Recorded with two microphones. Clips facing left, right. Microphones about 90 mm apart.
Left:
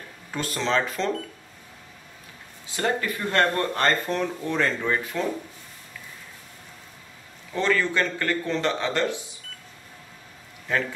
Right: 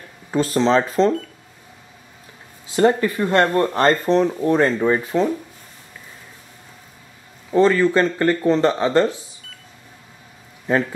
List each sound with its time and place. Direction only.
0.3 s speech: 35° right (ahead or behind)
2.7 s speech: 30° right (ahead or behind)
7.5 s speech: 35° right (ahead or behind)